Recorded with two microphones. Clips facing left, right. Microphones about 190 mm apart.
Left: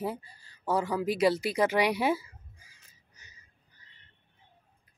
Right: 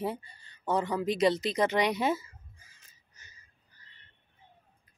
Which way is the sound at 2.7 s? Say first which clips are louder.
Left 2 dB; 15° left (ahead or behind).